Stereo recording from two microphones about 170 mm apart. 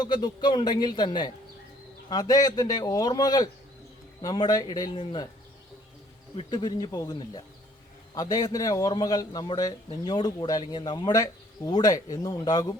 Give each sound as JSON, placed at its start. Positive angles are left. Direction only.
{"t": 0.0, "sound": "a man's voice", "side_deg": 25}
{"t": 6.3, "sound": "a man's voice", "side_deg": 25}